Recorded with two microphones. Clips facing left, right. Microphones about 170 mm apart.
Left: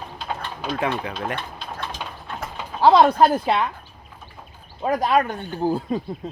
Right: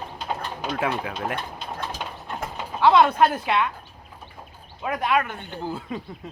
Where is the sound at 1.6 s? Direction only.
15° right (ahead or behind).